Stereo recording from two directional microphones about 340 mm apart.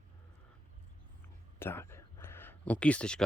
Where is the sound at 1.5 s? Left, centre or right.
Centre.